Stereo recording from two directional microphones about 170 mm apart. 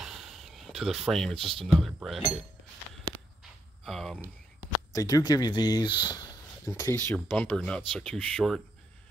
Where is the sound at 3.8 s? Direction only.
Centre (ahead or behind).